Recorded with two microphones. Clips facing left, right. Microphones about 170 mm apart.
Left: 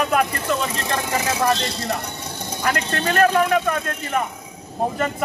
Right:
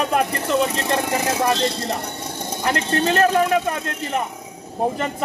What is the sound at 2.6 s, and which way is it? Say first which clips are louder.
Speech: right 3 dB; 25° right (ahead or behind).